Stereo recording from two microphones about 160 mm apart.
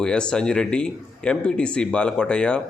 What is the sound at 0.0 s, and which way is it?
Speech, 5° left (ahead or behind).